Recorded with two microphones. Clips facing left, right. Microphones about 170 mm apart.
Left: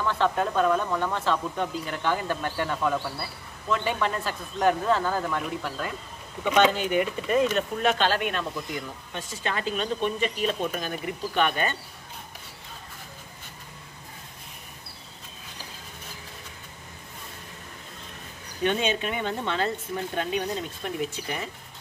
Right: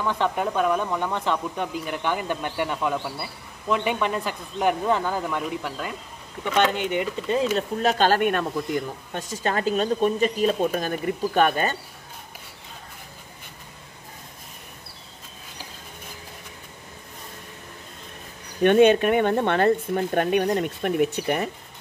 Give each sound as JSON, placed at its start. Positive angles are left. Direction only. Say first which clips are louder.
{"t": 0.0, "sound": "speech", "louder": "right 1 dB", "side_deg": -15}
{"t": 6.4, "sound": "speech", "louder": "left 1 dB", "side_deg": 15}
{"t": 6.7, "sound": "speech", "louder": "even", "side_deg": -20}
{"t": 7.5, "sound": "speech", "louder": "right 2 dB", "side_deg": -35}
{"t": 18.6, "sound": "speech", "louder": "right 10 dB", "side_deg": -55}